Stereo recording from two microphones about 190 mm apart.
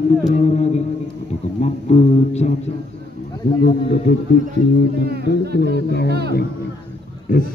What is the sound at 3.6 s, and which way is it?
Speech, 55° left (ahead or behind).